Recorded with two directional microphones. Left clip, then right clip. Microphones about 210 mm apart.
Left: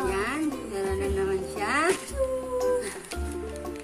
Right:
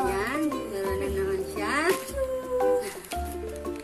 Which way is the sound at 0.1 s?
10° left (ahead or behind).